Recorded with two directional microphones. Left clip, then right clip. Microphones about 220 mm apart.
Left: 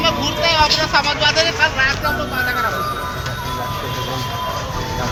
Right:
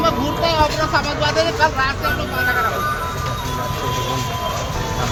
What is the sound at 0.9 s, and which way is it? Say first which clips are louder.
Speech: left 2 dB; 50° right (ahead or behind).